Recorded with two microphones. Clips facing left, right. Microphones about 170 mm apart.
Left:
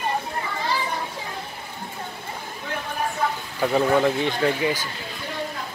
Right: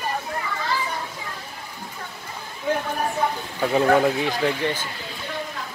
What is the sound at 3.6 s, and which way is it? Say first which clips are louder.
Speech: right 1 dB; centre (ahead or behind).